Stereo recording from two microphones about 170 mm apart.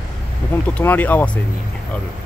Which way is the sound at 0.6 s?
10° left (ahead or behind).